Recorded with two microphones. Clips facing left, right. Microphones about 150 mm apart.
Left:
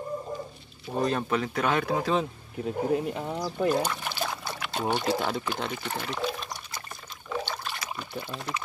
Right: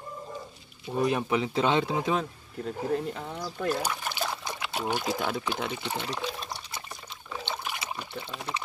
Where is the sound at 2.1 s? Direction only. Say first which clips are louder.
Left 2 dB; 5° left (ahead or behind).